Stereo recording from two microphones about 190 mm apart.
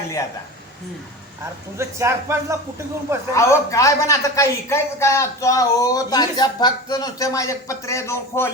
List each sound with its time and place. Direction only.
1.8 s speech: 15° right (ahead or behind)
3.3 s a man's voice: 15° left (ahead or behind)